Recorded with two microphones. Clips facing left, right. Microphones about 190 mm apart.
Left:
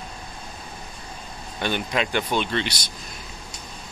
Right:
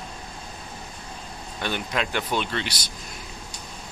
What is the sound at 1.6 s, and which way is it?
Speech, centre (ahead or behind).